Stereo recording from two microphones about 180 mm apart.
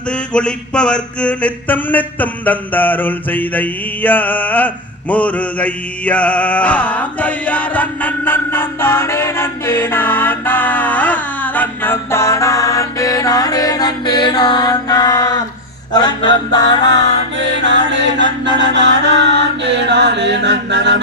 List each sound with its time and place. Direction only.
0.3 s mantra: 5° left (ahead or behind)
15.9 s music: 25° left (ahead or behind)
17.3 s music: 85° right
18.5 s chant: 75° right (ahead or behind)